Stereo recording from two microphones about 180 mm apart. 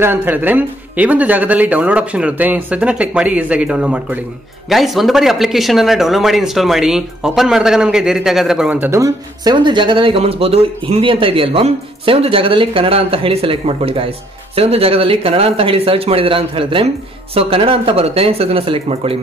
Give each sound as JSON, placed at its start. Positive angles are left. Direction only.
{"t": 0.0, "sound": "speech", "side_deg": -10}